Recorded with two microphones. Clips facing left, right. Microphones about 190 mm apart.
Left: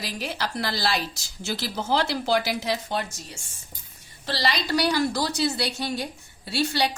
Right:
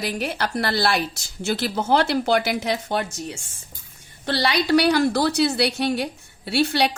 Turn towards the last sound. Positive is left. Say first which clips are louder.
# right 4 dB
turn(degrees=-60)  # may be behind; listen again after turning